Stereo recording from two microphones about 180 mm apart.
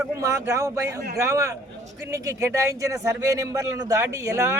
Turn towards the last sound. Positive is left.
turn(degrees=-15)  # may be behind; listen again after turning